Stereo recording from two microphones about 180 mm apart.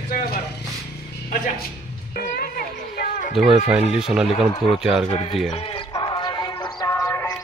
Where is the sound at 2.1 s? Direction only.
55° left (ahead or behind).